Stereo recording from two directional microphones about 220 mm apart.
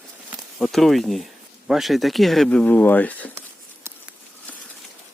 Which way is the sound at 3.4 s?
10° right (ahead or behind).